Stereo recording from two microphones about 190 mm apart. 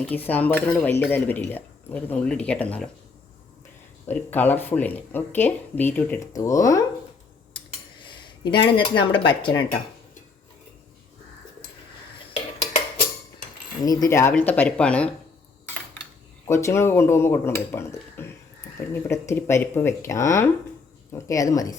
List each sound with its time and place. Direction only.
0.0 s speech: 10° left (ahead or behind)
4.1 s speech: 10° left (ahead or behind)
7.5 s cutlery: 25° left (ahead or behind)
13.8 s speech: 20° left (ahead or behind)
16.5 s speech: 15° left (ahead or behind)